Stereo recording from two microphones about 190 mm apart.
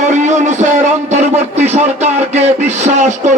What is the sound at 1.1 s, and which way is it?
Speech, 35° right (ahead or behind).